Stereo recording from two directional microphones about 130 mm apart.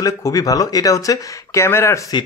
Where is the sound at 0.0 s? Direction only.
25° left (ahead or behind).